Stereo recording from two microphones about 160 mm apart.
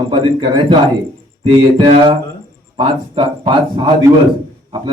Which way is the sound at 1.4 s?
30° right (ahead or behind).